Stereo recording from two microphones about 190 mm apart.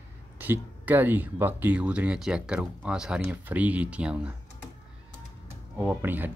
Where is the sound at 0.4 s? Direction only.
10° right (ahead or behind).